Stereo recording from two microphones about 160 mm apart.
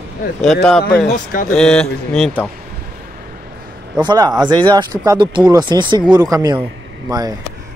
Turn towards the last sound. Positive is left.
turn(degrees=-25)  # may be behind; listen again after turning